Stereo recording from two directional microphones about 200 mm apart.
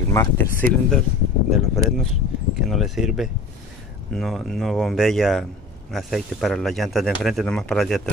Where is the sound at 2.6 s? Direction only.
Centre (ahead or behind).